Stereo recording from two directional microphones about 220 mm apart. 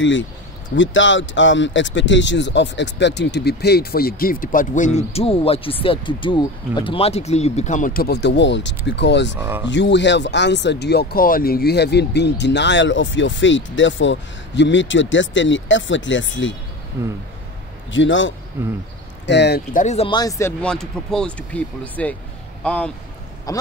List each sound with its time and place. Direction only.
0.0 s speech: 60° left (ahead or behind)
9.4 s speech: 10° right (ahead or behind)
9.7 s speech: 55° left (ahead or behind)
17.9 s speech: 60° left (ahead or behind)
18.6 s speech: 10° right (ahead or behind)
19.2 s speech: 50° left (ahead or behind); by 22.8 s 5° left (ahead or behind)
23.5 s speech: 15° left (ahead or behind)